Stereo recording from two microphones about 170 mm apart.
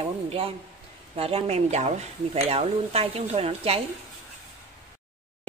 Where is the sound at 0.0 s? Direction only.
35° right (ahead or behind).